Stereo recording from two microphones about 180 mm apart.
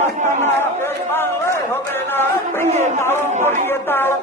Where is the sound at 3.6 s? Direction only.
10° left (ahead or behind).